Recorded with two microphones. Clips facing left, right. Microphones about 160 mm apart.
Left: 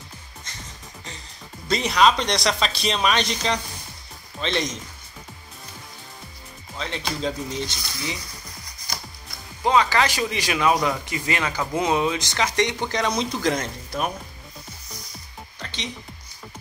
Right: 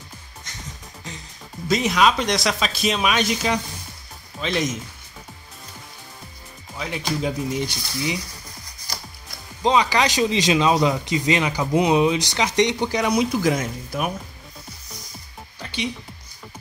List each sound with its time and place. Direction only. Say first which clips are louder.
1.7 s speech: even; centre (ahead or behind)
7.2 s speech: right 3 dB; 10° right (ahead or behind)
9.6 s speech: right 1 dB; 20° right (ahead or behind)
15.6 s music: right 7 dB; 10° right (ahead or behind)